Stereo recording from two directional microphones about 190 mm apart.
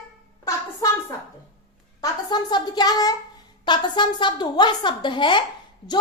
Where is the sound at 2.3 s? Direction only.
20° left (ahead or behind).